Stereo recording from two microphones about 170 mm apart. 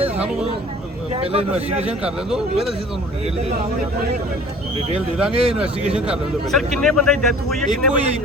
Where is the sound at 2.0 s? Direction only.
Centre (ahead or behind).